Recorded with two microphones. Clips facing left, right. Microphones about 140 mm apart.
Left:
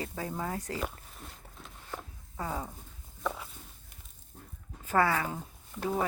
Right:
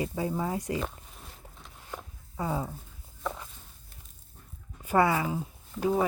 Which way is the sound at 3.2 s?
5° left (ahead or behind).